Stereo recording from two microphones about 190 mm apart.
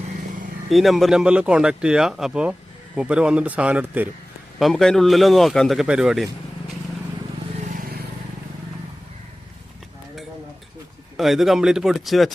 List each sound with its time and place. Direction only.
0.7 s speech: centre (ahead or behind)
4.6 s speech: centre (ahead or behind)
7.8 s vehicle: 50° right (ahead or behind)
11.2 s speech: centre (ahead or behind)